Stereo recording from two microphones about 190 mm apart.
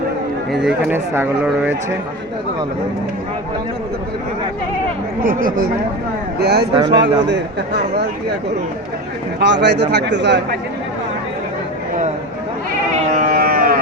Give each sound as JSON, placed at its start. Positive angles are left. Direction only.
{"t": 0.5, "sound": "speech", "side_deg": -5}
{"t": 5.2, "sound": "speech", "side_deg": -45}
{"t": 6.4, "sound": "speech", "side_deg": -60}
{"t": 9.4, "sound": "speech", "side_deg": -65}
{"t": 13.0, "sound": "a sound", "side_deg": -45}